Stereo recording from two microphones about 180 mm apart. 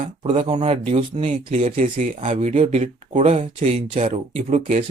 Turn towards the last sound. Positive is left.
turn(degrees=-40)  # may be behind; listen again after turning